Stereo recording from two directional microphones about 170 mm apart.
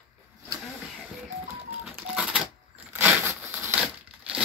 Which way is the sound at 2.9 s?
10° right (ahead or behind).